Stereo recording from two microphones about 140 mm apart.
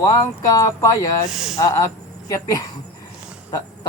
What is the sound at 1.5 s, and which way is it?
A man's voice, 20° left (ahead or behind).